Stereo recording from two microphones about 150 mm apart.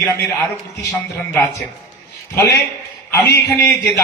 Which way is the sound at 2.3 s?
20° left (ahead or behind).